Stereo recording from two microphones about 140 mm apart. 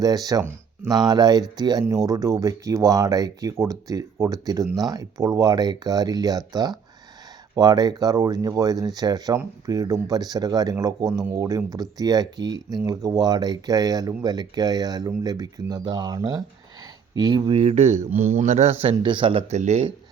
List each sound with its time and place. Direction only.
0.0 s speech: 25° right (ahead or behind); by 18.1 s 55° right (ahead or behind)
18.1 s speech: 15° right (ahead or behind)
18.3 s speech: 60° right (ahead or behind); by 19.5 s 40° right (ahead or behind)
19.5 s speech: 55° right (ahead or behind)